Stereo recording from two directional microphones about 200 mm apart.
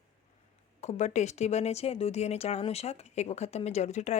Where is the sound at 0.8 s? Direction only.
35° left (ahead or behind).